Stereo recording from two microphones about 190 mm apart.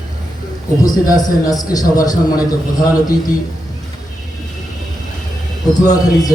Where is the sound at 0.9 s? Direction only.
20° left (ahead or behind).